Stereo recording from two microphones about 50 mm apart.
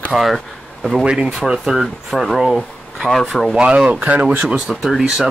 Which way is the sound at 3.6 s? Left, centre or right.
Right.